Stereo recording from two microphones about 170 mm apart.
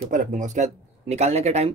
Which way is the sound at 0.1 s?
50° right (ahead or behind).